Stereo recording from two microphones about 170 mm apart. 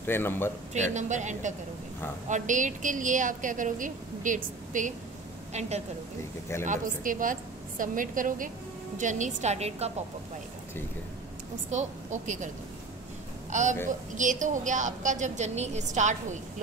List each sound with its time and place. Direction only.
0.0 s speech: 10° left (ahead or behind)
0.7 s a woman's voice: 45° right (ahead or behind)
11.7 s a woman's voice: 45° right (ahead or behind)
13.5 s a woman's voice: 45° right (ahead or behind)